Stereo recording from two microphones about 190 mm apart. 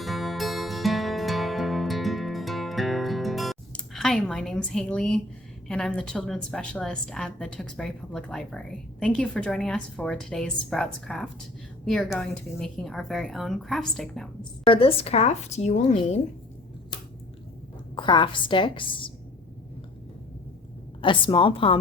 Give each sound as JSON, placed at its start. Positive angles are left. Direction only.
{"t": 0.0, "sound": "music", "side_deg": 0}
{"t": 5.6, "sound": "a woman's voice", "side_deg": 5}
{"t": 14.6, "sound": "speech", "side_deg": 30}
{"t": 17.9, "sound": "a woman's voice", "side_deg": 25}
{"t": 21.0, "sound": "a woman's voice", "side_deg": 25}